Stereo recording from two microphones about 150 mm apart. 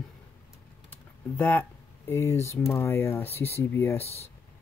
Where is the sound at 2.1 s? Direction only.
15° left (ahead or behind).